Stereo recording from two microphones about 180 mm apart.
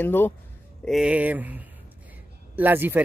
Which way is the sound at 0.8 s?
5° right (ahead or behind).